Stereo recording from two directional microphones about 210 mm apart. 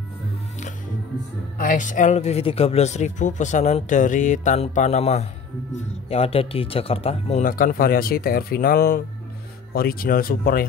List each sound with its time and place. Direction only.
1.6 s speech: 40° left (ahead or behind)